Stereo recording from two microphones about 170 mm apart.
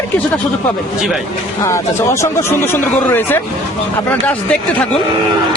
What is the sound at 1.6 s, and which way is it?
Speech, 15° left (ahead or behind).